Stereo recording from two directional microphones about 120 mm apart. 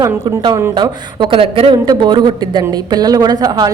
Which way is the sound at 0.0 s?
35° right (ahead or behind).